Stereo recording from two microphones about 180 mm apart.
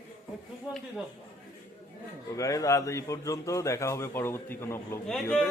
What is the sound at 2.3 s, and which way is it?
A man's voice, 20° left (ahead or behind).